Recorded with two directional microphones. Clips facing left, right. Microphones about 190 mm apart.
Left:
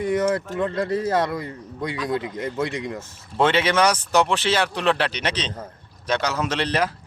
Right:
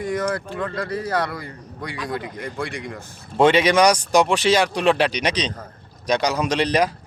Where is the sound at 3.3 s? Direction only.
15° right (ahead or behind).